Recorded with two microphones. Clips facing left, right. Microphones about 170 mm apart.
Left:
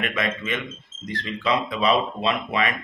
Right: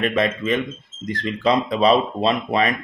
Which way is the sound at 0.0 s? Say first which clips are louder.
Right 6 dB; 35° right (ahead or behind).